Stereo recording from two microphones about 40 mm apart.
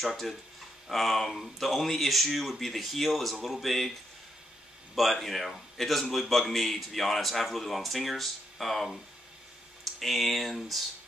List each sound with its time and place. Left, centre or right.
0.0 s a man's voice: centre
4.9 s a man's voice: centre